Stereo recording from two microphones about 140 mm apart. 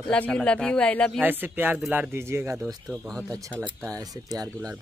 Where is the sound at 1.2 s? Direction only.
15° right (ahead or behind).